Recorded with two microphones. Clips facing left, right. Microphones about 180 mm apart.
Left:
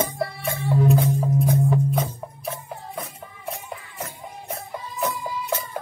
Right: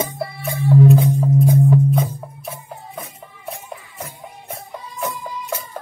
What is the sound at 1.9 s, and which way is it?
Music, centre (ahead or behind).